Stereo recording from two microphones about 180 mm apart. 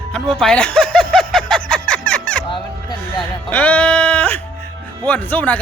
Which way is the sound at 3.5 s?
10° left (ahead or behind).